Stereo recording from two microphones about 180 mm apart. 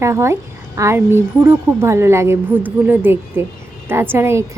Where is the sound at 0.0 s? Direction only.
15° right (ahead or behind).